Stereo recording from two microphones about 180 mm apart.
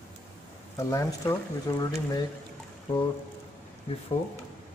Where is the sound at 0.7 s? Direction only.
15° left (ahead or behind).